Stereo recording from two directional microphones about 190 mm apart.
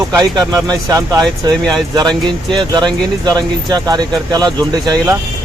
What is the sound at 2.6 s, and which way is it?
Speech, 20° right (ahead or behind).